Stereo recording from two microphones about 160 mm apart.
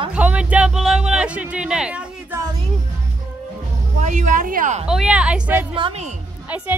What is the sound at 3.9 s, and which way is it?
Speech, 50° right (ahead or behind).